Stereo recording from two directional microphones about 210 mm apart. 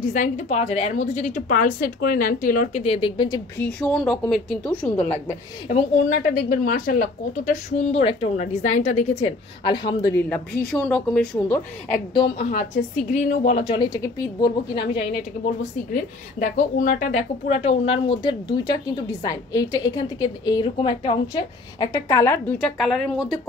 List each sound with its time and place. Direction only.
0.1 s a woman's voice: 35° left (ahead or behind)
3.5 s a woman's voice: 5° left (ahead or behind)
5.7 s a woman's voice: 35° left (ahead or behind); by 10.4 s 15° left (ahead or behind)
10.7 s a woman's voice: 5° left (ahead or behind)
12.1 s a woman's voice: 20° left (ahead or behind)
13.1 s a woman's voice: 35° left (ahead or behind); by 14.9 s 20° left (ahead or behind)
15.9 s a woman's voice: 40° left (ahead or behind); by 23.4 s centre (ahead or behind)